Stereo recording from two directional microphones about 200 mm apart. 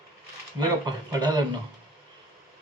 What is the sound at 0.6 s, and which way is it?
Speech, 20° right (ahead or behind).